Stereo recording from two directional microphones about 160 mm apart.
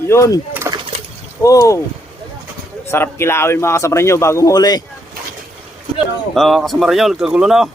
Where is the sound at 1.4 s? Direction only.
20° left (ahead or behind).